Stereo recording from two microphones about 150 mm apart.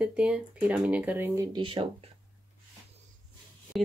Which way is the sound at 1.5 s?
35° right (ahead or behind).